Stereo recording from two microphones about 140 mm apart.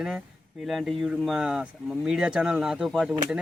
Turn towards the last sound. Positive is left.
turn(degrees=-5)  # may be behind; listen again after turning